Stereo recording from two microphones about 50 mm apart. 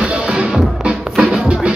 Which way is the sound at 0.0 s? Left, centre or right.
Centre.